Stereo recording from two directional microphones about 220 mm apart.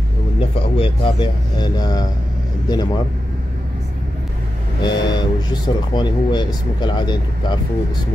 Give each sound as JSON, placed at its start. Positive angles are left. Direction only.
{"t": 0.4, "sound": "speech", "side_deg": 25}
{"t": 4.8, "sound": "speech", "side_deg": 20}